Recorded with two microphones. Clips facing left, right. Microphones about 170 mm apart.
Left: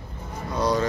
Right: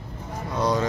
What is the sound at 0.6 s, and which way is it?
Speech, 20° right (ahead or behind).